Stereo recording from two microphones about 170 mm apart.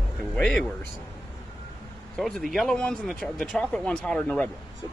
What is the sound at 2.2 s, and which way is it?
Speech, centre (ahead or behind).